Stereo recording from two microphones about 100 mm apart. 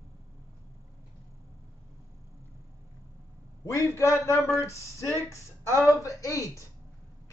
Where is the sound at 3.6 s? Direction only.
25° left (ahead or behind).